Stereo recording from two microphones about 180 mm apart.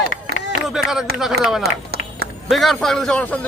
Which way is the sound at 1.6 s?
60° right (ahead or behind).